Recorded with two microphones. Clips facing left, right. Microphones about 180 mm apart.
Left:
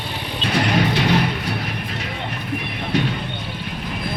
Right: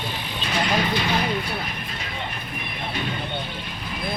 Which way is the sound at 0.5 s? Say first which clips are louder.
Left 4 dB; 70° left (ahead or behind).